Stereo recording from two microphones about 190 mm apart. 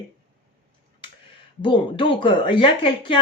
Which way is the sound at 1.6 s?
25° left (ahead or behind).